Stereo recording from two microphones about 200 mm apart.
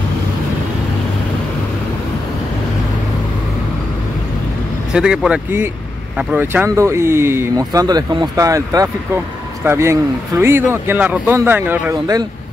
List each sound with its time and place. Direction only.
4.9 s speech: 5° right (ahead or behind)